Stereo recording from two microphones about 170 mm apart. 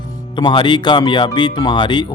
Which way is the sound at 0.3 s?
25° left (ahead or behind).